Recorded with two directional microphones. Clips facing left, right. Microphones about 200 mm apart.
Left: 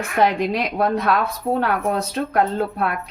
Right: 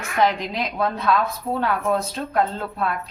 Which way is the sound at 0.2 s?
60° left (ahead or behind).